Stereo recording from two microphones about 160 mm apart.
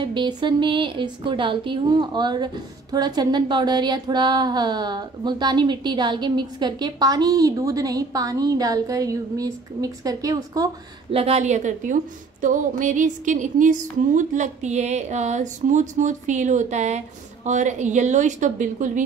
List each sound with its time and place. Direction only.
0.0 s speech: 30° right (ahead or behind)
11.1 s a woman's voice: 40° right (ahead or behind)